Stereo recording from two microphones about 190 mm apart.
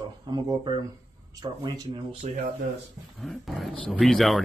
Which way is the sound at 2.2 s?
40° right (ahead or behind).